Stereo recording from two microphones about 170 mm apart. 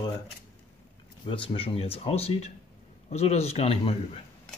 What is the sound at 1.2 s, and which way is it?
Speech, 30° left (ahead or behind).